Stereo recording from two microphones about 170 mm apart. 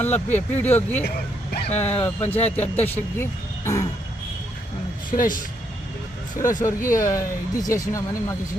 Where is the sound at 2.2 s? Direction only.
40° left (ahead or behind).